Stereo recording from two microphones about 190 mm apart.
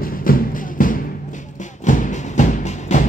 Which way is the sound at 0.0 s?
50° left (ahead or behind).